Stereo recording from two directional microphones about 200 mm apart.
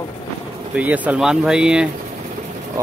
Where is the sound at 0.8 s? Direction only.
5° right (ahead or behind).